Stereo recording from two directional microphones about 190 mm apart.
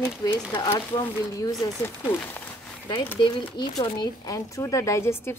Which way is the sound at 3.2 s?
25° left (ahead or behind).